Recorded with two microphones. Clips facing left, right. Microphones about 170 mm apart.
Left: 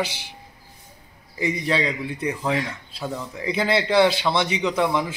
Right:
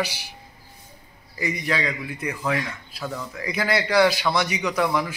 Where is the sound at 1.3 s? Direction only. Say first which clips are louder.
Left 3 dB; 25° left (ahead or behind).